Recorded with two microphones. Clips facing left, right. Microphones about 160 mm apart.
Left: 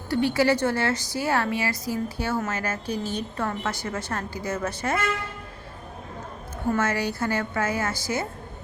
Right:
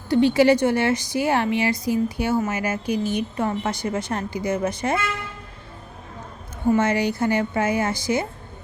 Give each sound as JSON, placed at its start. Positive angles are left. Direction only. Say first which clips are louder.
{"t": 0.1, "sound": "a woman's voice", "louder": "right 6 dB", "side_deg": -20}
{"t": 6.7, "sound": "a woman's voice", "louder": "right 5 dB", "side_deg": -15}